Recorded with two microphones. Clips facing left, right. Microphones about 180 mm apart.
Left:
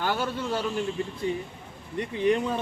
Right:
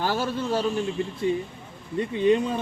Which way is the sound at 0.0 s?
35° right (ahead or behind).